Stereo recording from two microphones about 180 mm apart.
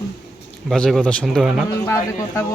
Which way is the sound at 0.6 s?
Centre (ahead or behind).